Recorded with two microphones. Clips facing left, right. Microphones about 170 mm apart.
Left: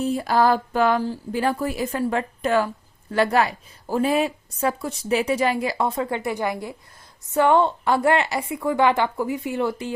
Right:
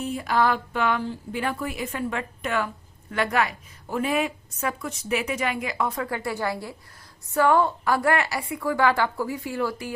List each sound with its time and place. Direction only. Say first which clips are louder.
0.0 s a woman's voice: left 4 dB; 35° left (ahead or behind)